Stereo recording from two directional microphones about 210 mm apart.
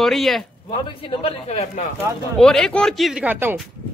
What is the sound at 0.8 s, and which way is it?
Speech, 25° left (ahead or behind).